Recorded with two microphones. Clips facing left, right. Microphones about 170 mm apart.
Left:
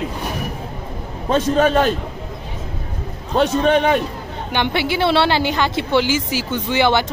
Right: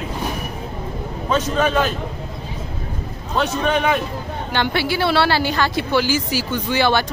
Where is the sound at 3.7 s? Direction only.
30° left (ahead or behind).